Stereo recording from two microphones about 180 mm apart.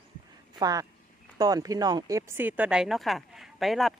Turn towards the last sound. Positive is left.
turn(degrees=0)  # may be behind; listen again after turning